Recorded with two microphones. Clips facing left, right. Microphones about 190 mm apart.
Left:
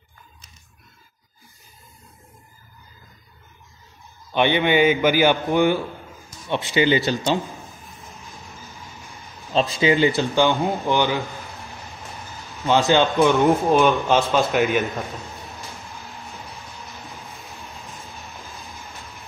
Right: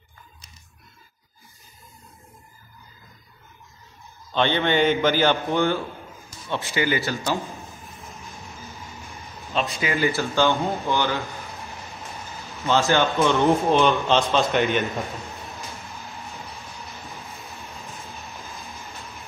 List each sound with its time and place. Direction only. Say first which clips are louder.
4.3 s speech: left 3 dB; 15° left (ahead or behind)
9.5 s speech: left 6 dB; 35° left (ahead or behind); by 11.2 s 15° left (ahead or behind)
12.6 s speech: left 3 dB; 15° left (ahead or behind)
13.5 s speech: left 2 dB; 5° left (ahead or behind)
17.6 s train: even; centre (ahead or behind)